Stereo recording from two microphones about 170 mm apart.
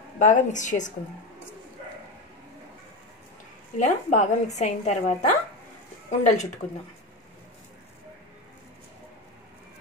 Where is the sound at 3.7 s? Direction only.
45° left (ahead or behind).